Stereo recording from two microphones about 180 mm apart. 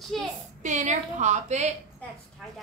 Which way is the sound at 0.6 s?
40° right (ahead or behind).